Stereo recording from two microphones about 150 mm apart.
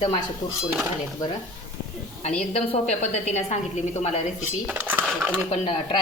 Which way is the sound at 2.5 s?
50° left (ahead or behind).